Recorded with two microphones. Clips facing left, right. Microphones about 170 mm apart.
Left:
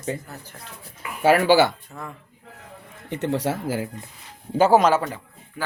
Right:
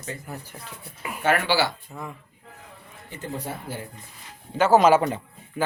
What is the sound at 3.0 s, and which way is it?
Speech, 70° left (ahead or behind).